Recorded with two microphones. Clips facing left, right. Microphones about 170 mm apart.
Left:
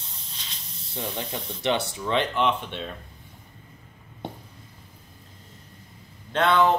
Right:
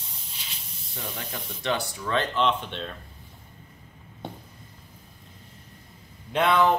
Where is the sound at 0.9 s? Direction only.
25° left (ahead or behind); by 2.9 s 10° left (ahead or behind).